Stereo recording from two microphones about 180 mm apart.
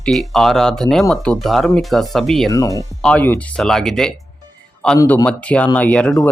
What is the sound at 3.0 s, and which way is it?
Speech, 5° left (ahead or behind).